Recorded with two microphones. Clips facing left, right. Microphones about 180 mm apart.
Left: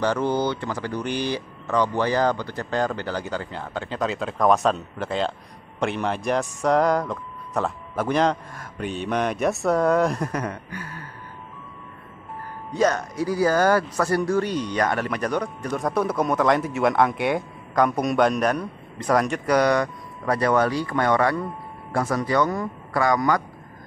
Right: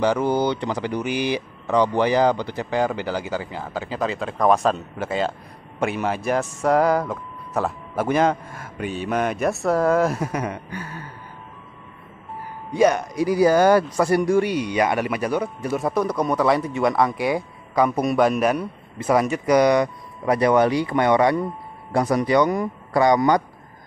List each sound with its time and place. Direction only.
0.0 s speech: 10° right (ahead or behind)
12.7 s speech: 10° right (ahead or behind)